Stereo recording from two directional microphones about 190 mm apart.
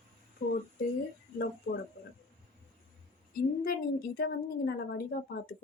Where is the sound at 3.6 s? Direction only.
50° left (ahead or behind).